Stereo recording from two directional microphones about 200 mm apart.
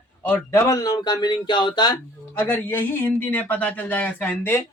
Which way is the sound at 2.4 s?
10° left (ahead or behind).